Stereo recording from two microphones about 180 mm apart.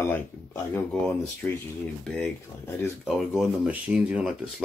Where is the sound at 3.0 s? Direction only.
Centre (ahead or behind).